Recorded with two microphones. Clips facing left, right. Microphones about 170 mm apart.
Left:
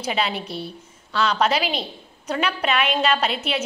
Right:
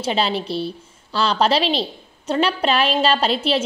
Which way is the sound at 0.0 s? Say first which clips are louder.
Right 4 dB; 30° right (ahead or behind).